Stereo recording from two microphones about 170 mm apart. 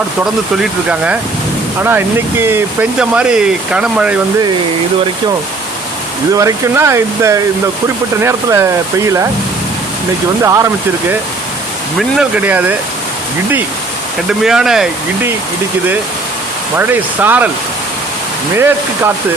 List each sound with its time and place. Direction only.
0.5 s speech: 5° right (ahead or behind)
6.3 s speech: 15° right (ahead or behind)
10.4 s speech: 20° right (ahead or behind)
11.9 s speech: 5° right (ahead or behind)
14.3 s speech: 5° right (ahead or behind)
16.7 s speech: 10° right (ahead or behind)
18.5 s speech: 15° right (ahead or behind)